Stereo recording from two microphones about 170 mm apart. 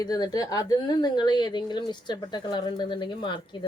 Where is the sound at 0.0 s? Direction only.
25° left (ahead or behind).